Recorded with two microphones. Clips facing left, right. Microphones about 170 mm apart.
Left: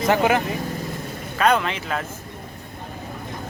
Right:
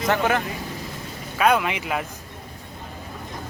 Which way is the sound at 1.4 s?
5° right (ahead or behind).